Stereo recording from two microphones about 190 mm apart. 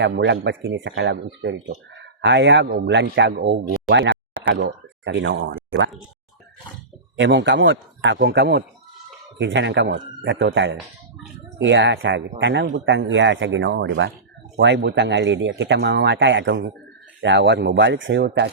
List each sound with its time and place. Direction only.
0.0 s speech: 65° right (ahead or behind)
7.2 s speech: 70° right (ahead or behind)